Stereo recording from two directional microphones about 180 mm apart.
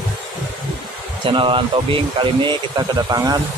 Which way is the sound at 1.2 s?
30° right (ahead or behind).